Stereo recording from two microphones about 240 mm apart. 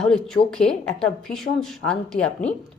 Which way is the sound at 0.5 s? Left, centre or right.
Centre.